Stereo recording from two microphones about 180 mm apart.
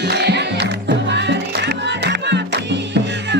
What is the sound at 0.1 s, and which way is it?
Music, 70° right (ahead or behind).